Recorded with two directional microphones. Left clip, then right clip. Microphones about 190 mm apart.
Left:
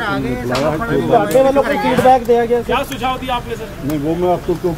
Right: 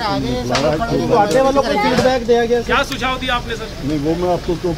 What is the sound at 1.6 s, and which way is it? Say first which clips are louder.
Speech: left 3 dB; 25° right (ahead or behind).